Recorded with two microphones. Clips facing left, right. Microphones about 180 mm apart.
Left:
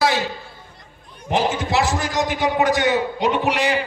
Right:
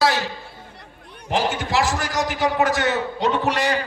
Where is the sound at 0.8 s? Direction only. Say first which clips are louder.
Right 2 dB; 65° right (ahead or behind).